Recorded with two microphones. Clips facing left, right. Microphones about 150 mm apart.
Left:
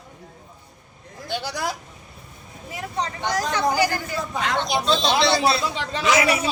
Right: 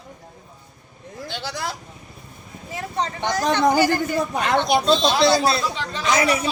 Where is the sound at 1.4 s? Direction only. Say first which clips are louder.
Even; 10° left (ahead or behind).